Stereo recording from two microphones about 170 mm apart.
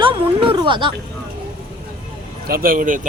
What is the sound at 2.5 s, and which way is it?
Speech, 60° right (ahead or behind).